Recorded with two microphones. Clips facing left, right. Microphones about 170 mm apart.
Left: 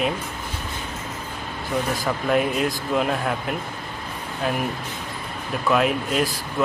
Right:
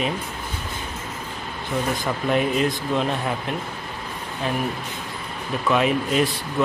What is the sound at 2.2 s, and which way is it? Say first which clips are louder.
Speech: right 1 dB; centre (ahead or behind).